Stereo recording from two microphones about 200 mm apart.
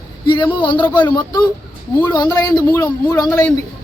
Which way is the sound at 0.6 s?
25° left (ahead or behind).